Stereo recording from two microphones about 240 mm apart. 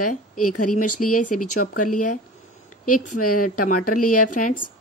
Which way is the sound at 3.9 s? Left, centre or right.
Left.